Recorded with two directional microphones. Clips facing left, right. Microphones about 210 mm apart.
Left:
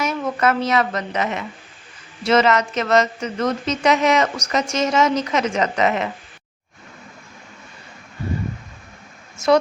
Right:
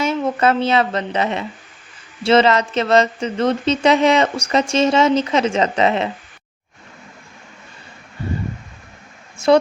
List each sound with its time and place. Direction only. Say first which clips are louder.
0.0 s speech: right 3 dB; 30° right (ahead or behind)